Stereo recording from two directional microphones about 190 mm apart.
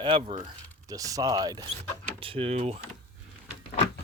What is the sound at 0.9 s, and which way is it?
Speech, 20° right (ahead or behind).